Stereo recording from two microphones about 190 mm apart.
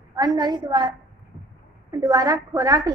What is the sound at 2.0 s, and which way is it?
Speech, 20° right (ahead or behind).